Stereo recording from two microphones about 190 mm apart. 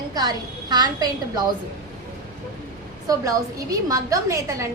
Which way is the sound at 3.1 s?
20° right (ahead or behind).